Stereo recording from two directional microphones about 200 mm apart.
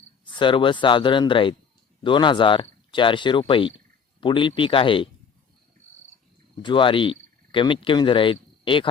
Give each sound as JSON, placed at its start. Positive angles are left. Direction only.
{"t": 0.3, "sound": "speech", "side_deg": 25}
{"t": 6.6, "sound": "speech", "side_deg": 25}